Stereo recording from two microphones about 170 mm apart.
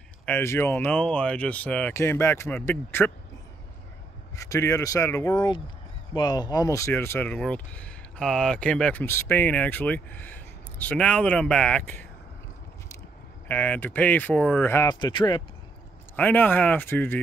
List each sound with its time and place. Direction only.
0.2 s speech: 10° left (ahead or behind)
4.4 s speech: 15° left (ahead or behind)
13.5 s speech: 10° left (ahead or behind)
16.2 s speech: 10° left (ahead or behind)